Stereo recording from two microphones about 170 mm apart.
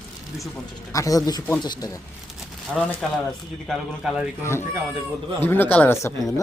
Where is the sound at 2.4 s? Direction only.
5° left (ahead or behind).